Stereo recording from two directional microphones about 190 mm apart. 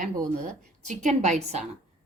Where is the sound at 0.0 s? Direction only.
45° right (ahead or behind).